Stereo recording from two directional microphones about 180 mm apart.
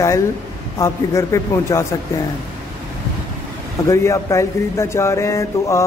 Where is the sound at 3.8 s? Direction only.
15° left (ahead or behind).